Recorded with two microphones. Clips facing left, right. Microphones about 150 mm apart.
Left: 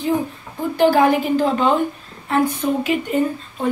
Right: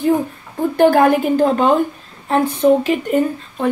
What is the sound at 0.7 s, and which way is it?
A woman's voice, 50° right (ahead or behind).